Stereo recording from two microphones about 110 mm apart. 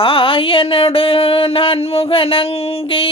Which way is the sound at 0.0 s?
50° left (ahead or behind).